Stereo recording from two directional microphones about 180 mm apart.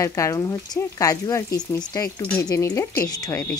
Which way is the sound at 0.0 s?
15° left (ahead or behind).